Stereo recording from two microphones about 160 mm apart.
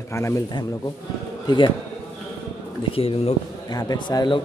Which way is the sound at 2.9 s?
35° left (ahead or behind).